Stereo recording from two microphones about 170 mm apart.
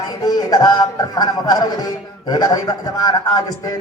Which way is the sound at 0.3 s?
25° left (ahead or behind).